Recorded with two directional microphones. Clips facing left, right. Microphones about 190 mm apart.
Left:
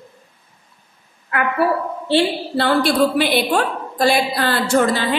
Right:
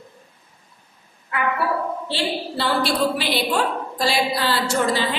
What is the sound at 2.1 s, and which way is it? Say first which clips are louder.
A woman's voice: left 11 dB; 55° left (ahead or behind).